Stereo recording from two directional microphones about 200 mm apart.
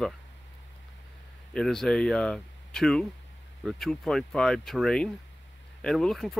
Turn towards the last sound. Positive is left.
turn(degrees=0)  # may be behind; listen again after turning